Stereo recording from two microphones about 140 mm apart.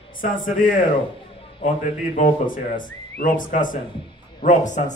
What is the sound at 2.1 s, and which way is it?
Speech, 70° left (ahead or behind).